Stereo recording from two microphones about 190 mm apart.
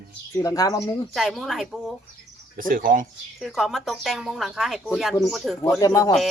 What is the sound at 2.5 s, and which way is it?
Speech, 45° right (ahead or behind).